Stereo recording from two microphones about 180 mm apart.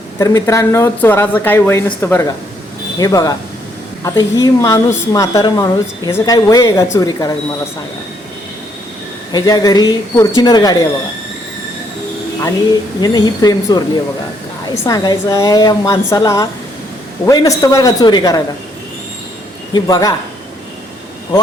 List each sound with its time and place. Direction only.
0.2 s a woman's voice: 15° left (ahead or behind)
9.3 s a woman's voice: 20° left (ahead or behind)
13.0 s a woman's voice: 20° left (ahead or behind)
19.7 s a woman's voice: 20° left (ahead or behind)